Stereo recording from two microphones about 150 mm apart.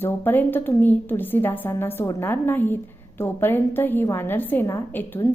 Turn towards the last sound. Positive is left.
turn(degrees=15)  # may be behind; listen again after turning